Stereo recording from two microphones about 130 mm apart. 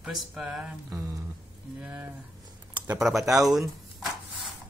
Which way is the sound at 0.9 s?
25° right (ahead or behind).